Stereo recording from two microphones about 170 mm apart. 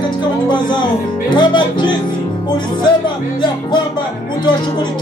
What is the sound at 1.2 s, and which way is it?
Music, 25° left (ahead or behind).